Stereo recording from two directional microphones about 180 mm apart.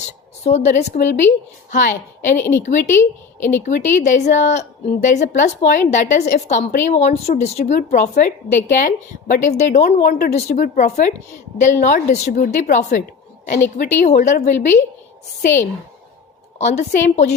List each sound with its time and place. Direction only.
0.4 s a woman's voice: 40° left (ahead or behind)
2.4 s a woman's voice: 10° left (ahead or behind)
2.6 s a woman's voice: 40° left (ahead or behind)
9.8 s speech: 55° left (ahead or behind)
10.3 s a woman's voice: 45° left (ahead or behind)
14.0 s a woman's voice: 45° left (ahead or behind)
16.6 s speech: 40° left (ahead or behind)